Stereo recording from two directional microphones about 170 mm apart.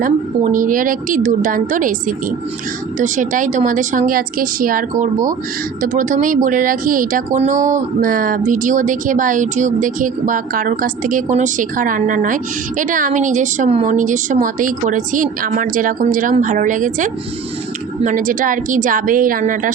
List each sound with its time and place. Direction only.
0.0 s speech: 55° right (ahead or behind)